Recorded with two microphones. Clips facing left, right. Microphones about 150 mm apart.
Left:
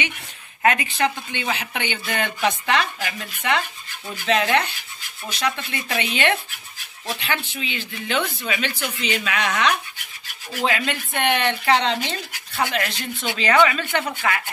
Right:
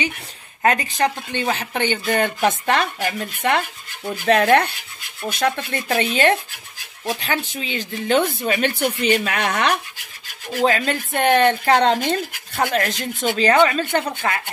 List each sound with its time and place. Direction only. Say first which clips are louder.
0.6 s speech: right 2 dB; 40° right (ahead or behind)
5.9 s speech: right 5 dB; 40° right (ahead or behind)
10.6 s speech: right 4 dB; 40° right (ahead or behind)